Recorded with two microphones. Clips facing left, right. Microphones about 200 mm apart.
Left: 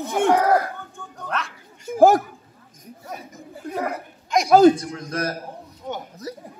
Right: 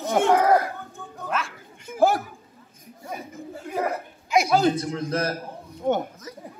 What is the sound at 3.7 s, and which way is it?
Speech, 5° right (ahead or behind).